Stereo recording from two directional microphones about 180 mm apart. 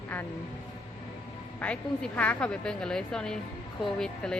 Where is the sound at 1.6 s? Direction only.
10° left (ahead or behind).